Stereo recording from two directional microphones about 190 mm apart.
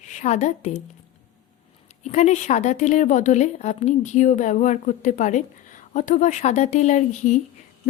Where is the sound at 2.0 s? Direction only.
35° left (ahead or behind).